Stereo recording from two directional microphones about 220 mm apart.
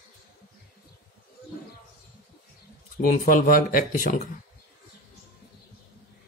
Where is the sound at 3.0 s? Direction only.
40° left (ahead or behind).